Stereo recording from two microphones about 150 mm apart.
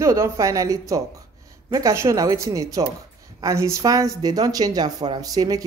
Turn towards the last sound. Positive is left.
turn(degrees=-25)  # may be behind; listen again after turning